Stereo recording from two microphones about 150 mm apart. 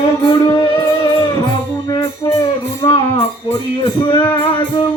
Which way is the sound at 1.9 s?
20° left (ahead or behind).